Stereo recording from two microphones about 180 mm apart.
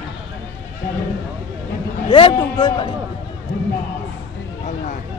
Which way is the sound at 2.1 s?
25° left (ahead or behind).